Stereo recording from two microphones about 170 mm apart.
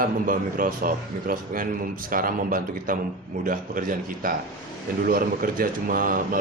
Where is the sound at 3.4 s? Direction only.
50° right (ahead or behind).